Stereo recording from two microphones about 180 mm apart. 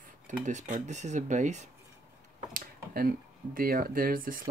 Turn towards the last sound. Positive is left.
turn(degrees=-50)  # may be behind; listen again after turning